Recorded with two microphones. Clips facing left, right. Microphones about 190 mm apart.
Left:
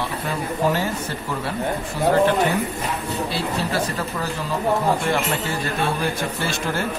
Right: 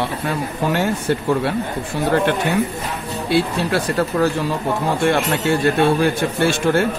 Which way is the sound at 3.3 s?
65° right (ahead or behind).